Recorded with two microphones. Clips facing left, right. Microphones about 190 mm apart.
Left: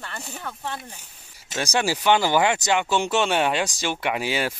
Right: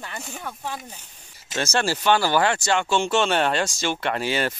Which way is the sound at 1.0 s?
10° left (ahead or behind).